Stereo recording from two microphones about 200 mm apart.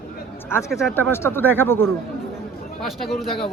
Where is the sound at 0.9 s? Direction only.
10° left (ahead or behind).